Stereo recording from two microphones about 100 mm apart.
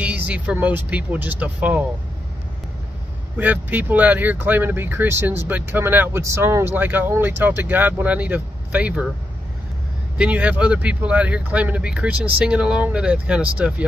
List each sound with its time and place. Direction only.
0.0 s speech: 15° right (ahead or behind)
3.3 s speech: 15° right (ahead or behind)
10.1 s speech: 10° right (ahead or behind)